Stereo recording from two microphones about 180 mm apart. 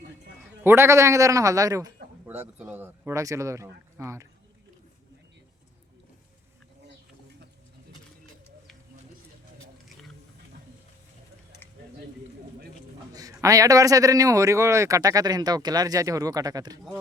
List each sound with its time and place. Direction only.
0.6 s a man's voice: 15° right (ahead or behind)
13.1 s a man's voice: 20° right (ahead or behind)